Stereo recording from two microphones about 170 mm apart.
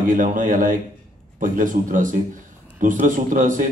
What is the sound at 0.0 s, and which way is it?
A man's voice, 50° right (ahead or behind).